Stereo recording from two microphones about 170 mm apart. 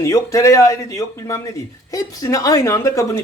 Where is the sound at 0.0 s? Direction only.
20° left (ahead or behind).